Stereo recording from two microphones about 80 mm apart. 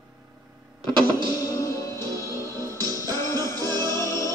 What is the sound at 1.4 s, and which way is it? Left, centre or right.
Music, left.